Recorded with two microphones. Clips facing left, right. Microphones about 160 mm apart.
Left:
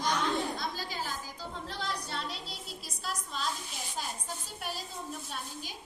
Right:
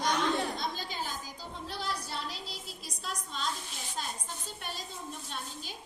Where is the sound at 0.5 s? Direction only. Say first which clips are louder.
Even; 20° right (ahead or behind).